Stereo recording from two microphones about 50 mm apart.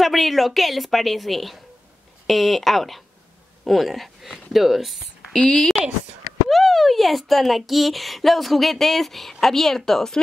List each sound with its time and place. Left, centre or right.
0.0 s speech: centre
5.3 s speech: centre